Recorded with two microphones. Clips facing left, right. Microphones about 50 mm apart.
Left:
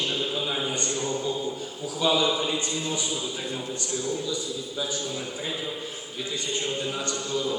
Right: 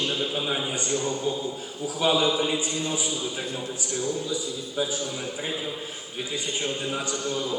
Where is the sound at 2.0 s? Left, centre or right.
Centre.